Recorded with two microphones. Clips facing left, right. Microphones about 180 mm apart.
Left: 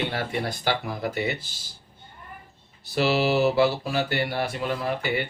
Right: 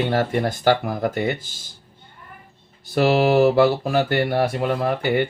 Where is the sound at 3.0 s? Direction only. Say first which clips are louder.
Right 6 dB; 50° right (ahead or behind).